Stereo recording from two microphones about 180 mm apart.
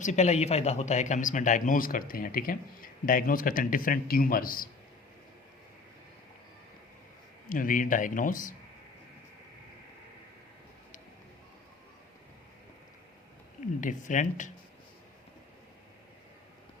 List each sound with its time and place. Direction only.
0.0 s speech: 40° left (ahead or behind)
7.5 s speech: 50° left (ahead or behind)
13.8 s speech: 45° left (ahead or behind)